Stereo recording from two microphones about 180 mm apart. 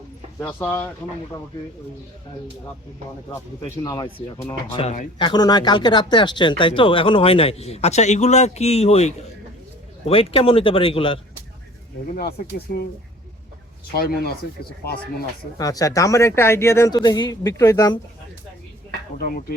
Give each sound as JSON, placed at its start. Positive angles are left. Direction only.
{"t": 0.3, "sound": "speech", "side_deg": 15}
{"t": 3.6, "sound": "speech", "side_deg": 25}
{"t": 5.2, "sound": "speech", "side_deg": 25}
{"t": 12.1, "sound": "speech", "side_deg": 60}
{"t": 13.9, "sound": "speech", "side_deg": 55}
{"t": 15.5, "sound": "speech", "side_deg": 20}